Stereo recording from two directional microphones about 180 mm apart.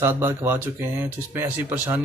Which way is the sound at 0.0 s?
10° right (ahead or behind).